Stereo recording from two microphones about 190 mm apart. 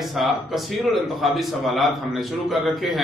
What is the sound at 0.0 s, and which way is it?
A man's voice, centre (ahead or behind).